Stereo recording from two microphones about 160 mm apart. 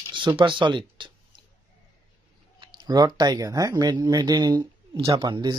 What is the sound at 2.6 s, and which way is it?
Speech, 25° right (ahead or behind).